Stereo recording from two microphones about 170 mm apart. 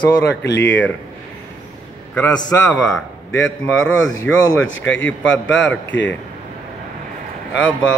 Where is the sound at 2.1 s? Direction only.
10° left (ahead or behind).